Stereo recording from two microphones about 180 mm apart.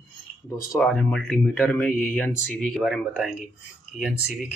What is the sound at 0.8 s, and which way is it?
Speech, centre (ahead or behind).